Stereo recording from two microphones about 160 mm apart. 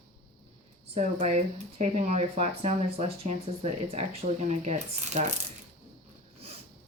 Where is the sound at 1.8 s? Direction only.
45° right (ahead or behind).